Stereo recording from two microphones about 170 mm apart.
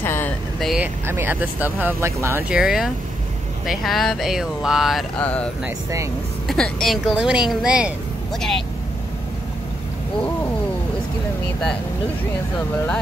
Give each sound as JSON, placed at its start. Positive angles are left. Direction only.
{"t": 0.0, "sound": "vehicle", "side_deg": 15}
{"t": 0.6, "sound": "speech", "side_deg": 0}
{"t": 1.0, "sound": "speech", "side_deg": -15}
{"t": 2.5, "sound": "speech", "side_deg": -5}
{"t": 5.2, "sound": "speech", "side_deg": 10}